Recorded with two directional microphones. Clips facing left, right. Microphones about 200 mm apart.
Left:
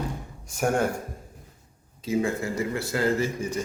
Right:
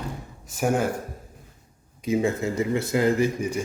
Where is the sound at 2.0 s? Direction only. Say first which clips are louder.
Right 2 dB; 20° right (ahead or behind).